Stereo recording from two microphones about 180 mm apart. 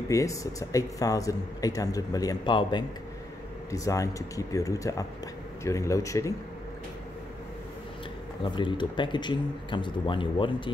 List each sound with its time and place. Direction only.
0.1 s speech: 20° left (ahead or behind)
8.5 s speech: 25° left (ahead or behind)